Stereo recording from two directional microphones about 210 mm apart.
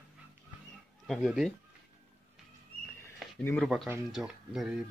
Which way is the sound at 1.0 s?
Centre (ahead or behind).